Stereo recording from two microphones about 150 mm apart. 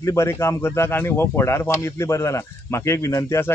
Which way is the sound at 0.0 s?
20° left (ahead or behind).